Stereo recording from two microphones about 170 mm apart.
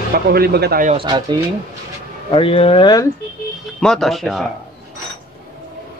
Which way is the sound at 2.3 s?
35° left (ahead or behind).